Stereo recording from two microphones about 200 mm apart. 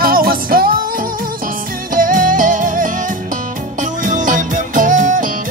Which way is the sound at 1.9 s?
40° right (ahead or behind).